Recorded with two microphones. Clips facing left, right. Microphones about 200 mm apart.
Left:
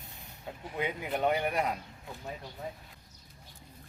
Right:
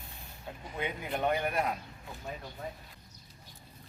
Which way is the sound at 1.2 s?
15° left (ahead or behind).